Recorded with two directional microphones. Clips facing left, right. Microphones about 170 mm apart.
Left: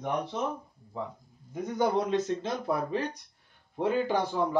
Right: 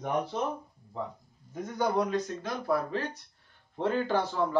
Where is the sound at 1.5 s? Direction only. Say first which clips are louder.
Left 2 dB; 20° left (ahead or behind).